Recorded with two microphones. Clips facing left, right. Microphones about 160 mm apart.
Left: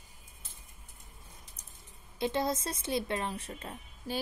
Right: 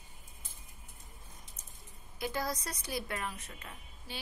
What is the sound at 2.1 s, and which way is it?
Speech, 25° left (ahead or behind).